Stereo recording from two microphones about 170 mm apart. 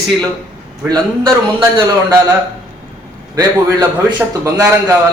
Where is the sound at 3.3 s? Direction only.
20° right (ahead or behind).